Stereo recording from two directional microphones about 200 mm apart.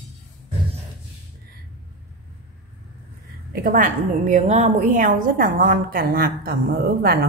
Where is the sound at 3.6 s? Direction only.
40° right (ahead or behind).